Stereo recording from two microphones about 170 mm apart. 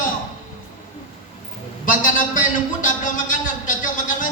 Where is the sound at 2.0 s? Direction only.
50° left (ahead or behind).